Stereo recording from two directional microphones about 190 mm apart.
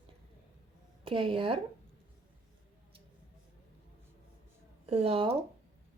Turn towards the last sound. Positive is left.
turn(degrees=-30)  # may be behind; listen again after turning